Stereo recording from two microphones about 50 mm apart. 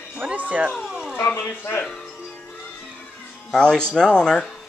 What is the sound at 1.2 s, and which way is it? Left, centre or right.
Speech, left.